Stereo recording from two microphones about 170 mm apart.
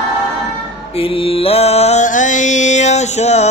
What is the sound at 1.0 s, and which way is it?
Mantra, 35° left (ahead or behind).